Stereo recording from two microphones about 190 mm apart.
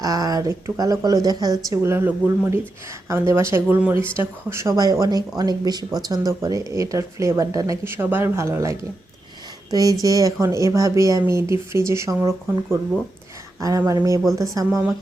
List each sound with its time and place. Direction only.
0.0 s a woman's voice: 20° right (ahead or behind)